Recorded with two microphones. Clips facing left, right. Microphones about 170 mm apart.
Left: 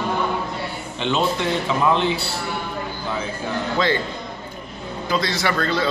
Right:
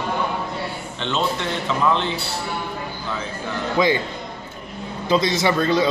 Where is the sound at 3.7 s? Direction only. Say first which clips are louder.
Right 3 dB; 15° right (ahead or behind).